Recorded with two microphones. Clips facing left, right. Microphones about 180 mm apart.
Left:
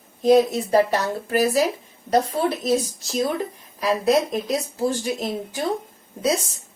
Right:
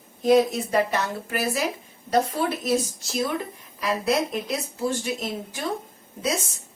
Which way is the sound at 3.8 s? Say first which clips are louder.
Left 4 dB; 35° left (ahead or behind).